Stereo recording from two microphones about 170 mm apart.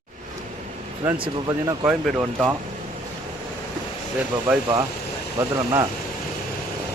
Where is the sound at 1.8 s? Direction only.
5° right (ahead or behind).